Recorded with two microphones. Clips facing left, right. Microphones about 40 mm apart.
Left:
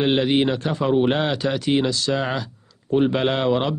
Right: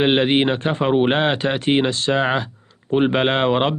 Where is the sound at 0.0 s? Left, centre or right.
Right.